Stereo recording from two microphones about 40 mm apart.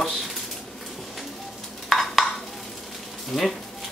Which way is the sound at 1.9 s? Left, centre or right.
Centre.